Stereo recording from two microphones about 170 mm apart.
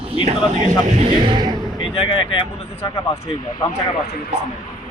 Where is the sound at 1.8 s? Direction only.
35° left (ahead or behind).